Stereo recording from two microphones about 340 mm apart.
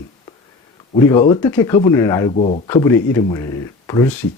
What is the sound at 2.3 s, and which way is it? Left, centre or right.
Speech, centre.